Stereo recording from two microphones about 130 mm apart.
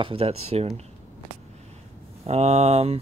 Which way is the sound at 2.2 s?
55° right (ahead or behind).